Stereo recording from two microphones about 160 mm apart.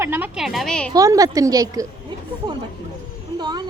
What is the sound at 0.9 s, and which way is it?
Speech, 20° right (ahead or behind).